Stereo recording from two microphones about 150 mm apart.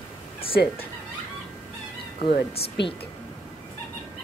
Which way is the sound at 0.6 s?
90° left.